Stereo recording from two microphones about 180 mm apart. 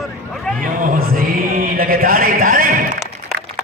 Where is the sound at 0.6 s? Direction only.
50° right (ahead or behind).